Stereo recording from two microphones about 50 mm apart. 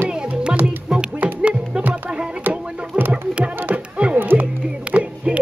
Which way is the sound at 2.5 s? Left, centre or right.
Right.